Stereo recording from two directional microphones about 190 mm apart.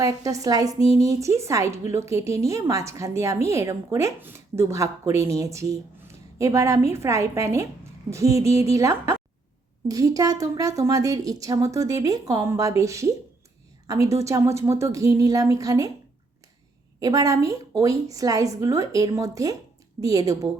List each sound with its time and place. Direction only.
0.0 s a woman's voice: 15° right (ahead or behind)
17.0 s a woman's voice: 20° right (ahead or behind)